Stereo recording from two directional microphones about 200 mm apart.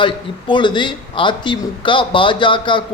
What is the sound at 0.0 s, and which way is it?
Speech, 25° left (ahead or behind).